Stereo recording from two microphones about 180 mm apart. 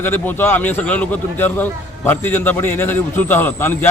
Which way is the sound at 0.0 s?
10° left (ahead or behind).